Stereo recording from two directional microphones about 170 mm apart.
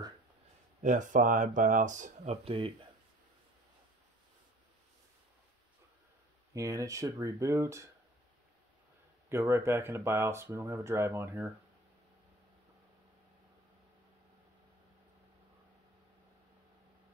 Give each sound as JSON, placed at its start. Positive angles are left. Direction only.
{"t": 0.8, "sound": "speech", "side_deg": -45}
{"t": 6.5, "sound": "speech", "side_deg": -20}
{"t": 9.3, "sound": "speech", "side_deg": -15}